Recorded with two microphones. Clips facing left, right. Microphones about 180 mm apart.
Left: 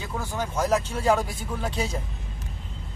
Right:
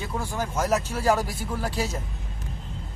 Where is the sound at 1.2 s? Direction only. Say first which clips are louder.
Right 1 dB; 25° left (ahead or behind).